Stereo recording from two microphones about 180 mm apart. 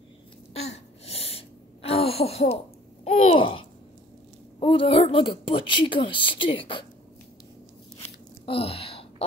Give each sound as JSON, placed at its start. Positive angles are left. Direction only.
{"t": 0.5, "sound": "sneeze", "side_deg": 35}
{"t": 4.6, "sound": "a woman's voice", "side_deg": 30}
{"t": 8.0, "sound": "a sound", "side_deg": 35}